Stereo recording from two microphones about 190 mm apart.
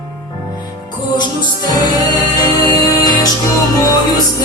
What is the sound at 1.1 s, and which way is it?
Music, 20° left (ahead or behind).